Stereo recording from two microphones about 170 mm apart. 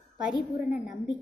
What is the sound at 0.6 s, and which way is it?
Speech, 5° right (ahead or behind).